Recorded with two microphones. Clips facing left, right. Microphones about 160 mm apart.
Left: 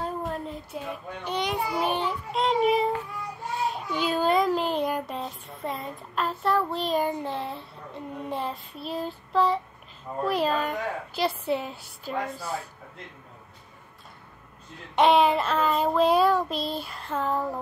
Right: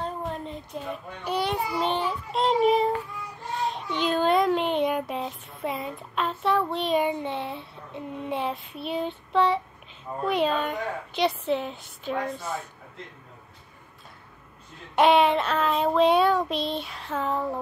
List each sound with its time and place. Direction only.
0.0 s a sound: 5° left (ahead or behind)
1.2 s a child's voice: 10° right (ahead or behind)
1.5 s a child's voice: 10° left (ahead or behind)
10.2 s child singing: centre (ahead or behind)
15.0 s child singing: centre (ahead or behind)